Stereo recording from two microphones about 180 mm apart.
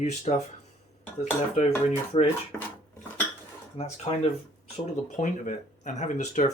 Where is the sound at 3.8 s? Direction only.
35° left (ahead or behind).